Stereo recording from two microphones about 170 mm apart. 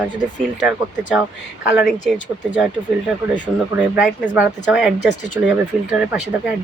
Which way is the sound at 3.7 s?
5° right (ahead or behind).